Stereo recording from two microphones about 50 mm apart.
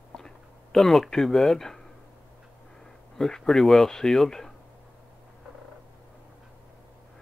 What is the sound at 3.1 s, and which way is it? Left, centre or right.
Speech, centre.